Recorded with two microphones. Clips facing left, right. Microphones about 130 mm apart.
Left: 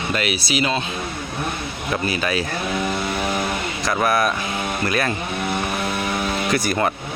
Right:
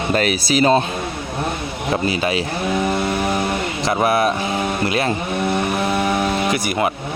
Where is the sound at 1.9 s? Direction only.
25° right (ahead or behind).